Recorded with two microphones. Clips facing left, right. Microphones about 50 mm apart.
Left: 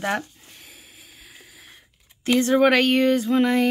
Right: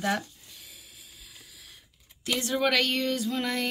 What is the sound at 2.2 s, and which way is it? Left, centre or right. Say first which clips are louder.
Female singing: left 10 dB; left.